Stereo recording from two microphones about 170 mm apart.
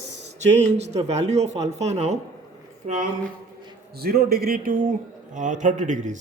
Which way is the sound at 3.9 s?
65° right (ahead or behind).